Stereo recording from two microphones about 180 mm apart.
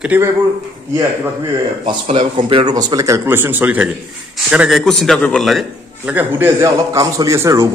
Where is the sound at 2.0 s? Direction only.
30° right (ahead or behind).